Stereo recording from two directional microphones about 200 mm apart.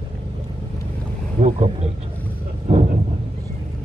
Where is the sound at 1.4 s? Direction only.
35° right (ahead or behind).